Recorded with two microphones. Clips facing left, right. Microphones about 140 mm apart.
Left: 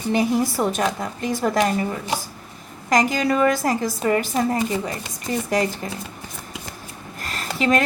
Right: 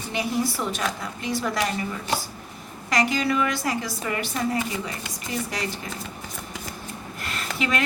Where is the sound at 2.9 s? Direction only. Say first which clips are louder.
Left 4 dB; 45° left (ahead or behind).